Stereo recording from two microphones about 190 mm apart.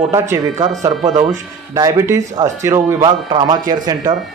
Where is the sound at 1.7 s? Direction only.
15° right (ahead or behind).